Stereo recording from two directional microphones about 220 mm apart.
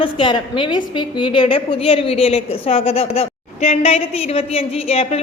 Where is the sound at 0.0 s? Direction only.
20° left (ahead or behind).